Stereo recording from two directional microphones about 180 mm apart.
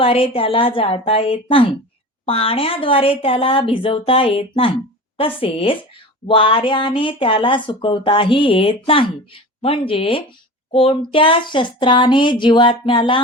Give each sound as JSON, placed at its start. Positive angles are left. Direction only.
{"t": 0.0, "sound": "speech", "side_deg": 30}